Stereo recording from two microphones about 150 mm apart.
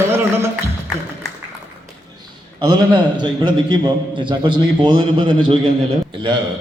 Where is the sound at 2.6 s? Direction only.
30° right (ahead or behind).